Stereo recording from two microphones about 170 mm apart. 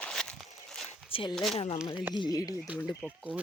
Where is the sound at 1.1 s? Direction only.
30° left (ahead or behind).